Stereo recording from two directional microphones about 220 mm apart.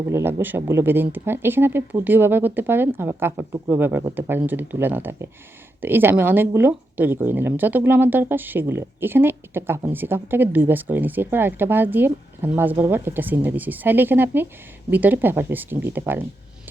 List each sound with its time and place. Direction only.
0.1 s speech: 10° right (ahead or behind)